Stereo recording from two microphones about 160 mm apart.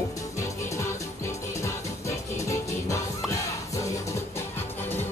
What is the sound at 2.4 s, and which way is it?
Music, 20° left (ahead or behind).